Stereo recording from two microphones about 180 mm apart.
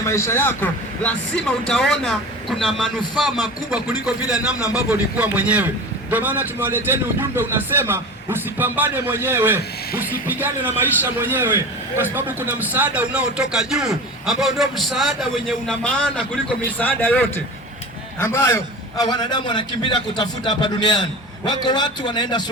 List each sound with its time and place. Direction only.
0.0 s a man's voice: 15° left (ahead or behind)